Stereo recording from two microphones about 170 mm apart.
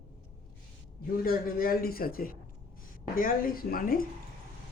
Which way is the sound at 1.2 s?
60° left (ahead or behind).